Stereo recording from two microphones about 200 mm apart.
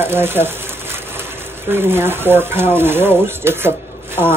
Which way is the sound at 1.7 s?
10° right (ahead or behind).